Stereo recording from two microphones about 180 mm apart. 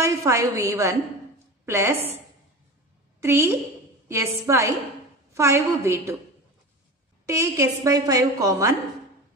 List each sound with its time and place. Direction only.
0.0 s a woman's voice: 15° right (ahead or behind)
3.2 s a woman's voice: 15° right (ahead or behind)
7.2 s a woman's voice: 15° right (ahead or behind)